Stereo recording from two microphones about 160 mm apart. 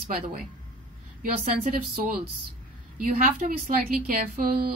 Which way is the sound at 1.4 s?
55° right (ahead or behind).